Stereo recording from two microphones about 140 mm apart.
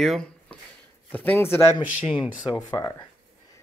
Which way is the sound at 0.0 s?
5° left (ahead or behind).